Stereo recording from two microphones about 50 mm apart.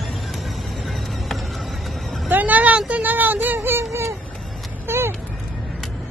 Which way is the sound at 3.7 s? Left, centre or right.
Right.